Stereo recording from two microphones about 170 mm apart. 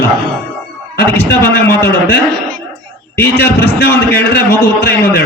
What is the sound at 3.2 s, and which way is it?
A man's voice, 75° left (ahead or behind).